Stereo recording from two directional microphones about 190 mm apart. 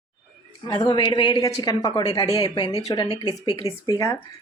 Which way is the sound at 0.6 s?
20° left (ahead or behind).